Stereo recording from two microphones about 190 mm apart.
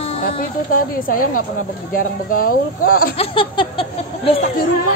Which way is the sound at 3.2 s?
25° left (ahead or behind).